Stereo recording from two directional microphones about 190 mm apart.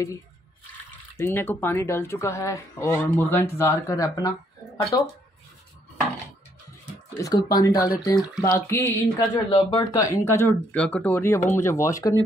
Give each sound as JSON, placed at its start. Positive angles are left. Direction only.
{"t": 1.1, "sound": "speech", "side_deg": 10}
{"t": 7.2, "sound": "speech", "side_deg": 20}